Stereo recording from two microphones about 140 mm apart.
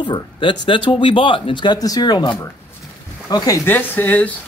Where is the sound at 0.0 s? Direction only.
35° left (ahead or behind); by 4.3 s 10° left (ahead or behind).